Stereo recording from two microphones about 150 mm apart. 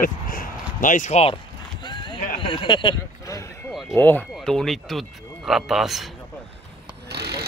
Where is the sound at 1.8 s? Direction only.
30° left (ahead or behind).